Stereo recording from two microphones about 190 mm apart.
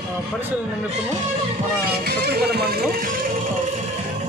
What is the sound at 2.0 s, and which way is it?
Speech, 55° right (ahead or behind).